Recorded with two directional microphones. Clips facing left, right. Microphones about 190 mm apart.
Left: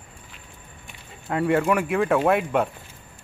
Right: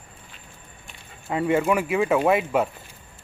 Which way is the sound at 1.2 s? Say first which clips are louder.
Even; centre (ahead or behind).